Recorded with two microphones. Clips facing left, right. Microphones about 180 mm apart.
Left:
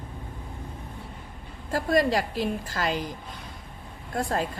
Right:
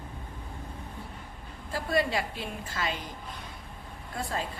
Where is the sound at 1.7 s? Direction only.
45° left (ahead or behind).